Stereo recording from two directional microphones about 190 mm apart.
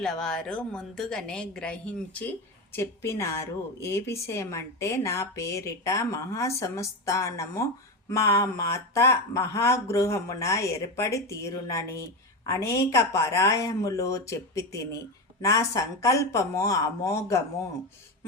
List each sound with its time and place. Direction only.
0.0 s a woman's voice: 5° left (ahead or behind)